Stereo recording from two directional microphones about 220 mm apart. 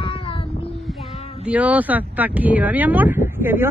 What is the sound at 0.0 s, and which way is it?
Child singing, 25° left (ahead or behind).